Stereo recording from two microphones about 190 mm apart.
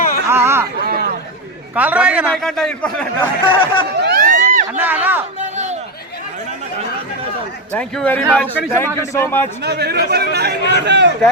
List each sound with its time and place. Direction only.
0.3 s chatter: 10° right (ahead or behind)
0.9 s chatter: 55° right (ahead or behind)
1.7 s a man's voice: 10° right (ahead or behind)
3.4 s speech: 25° left (ahead or behind)
4.0 s run: 50° right (ahead or behind)
4.8 s a man's voice: 10° right (ahead or behind)
5.4 s a sound: 35° right (ahead or behind)
7.7 s a man's voice: 5° left (ahead or behind)
9.6 s speech: 60° right (ahead or behind)